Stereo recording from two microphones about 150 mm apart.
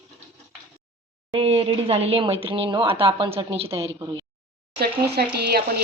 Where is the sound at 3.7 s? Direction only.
20° right (ahead or behind).